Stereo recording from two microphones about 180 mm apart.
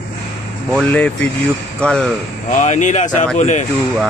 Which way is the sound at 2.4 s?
45° left (ahead or behind).